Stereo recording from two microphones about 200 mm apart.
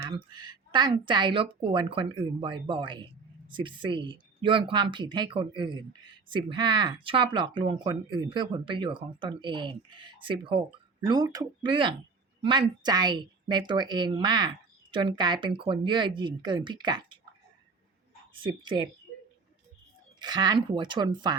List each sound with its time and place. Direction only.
0.0 s a woman's voice: 25° right (ahead or behind)
18.4 s speech: 20° right (ahead or behind)
20.1 s speech: 20° right (ahead or behind)